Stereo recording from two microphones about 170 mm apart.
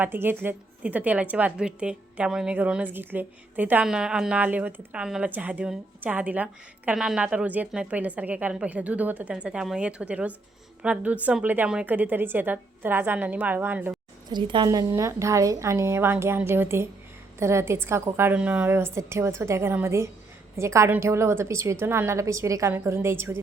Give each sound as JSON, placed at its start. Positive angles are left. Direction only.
{"t": 0.0, "sound": "a woman's voice", "side_deg": -10}
{"t": 14.3, "sound": "a woman's voice", "side_deg": -30}